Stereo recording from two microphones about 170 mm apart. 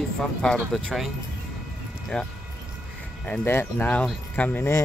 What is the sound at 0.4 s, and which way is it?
Speech, 5° left (ahead or behind).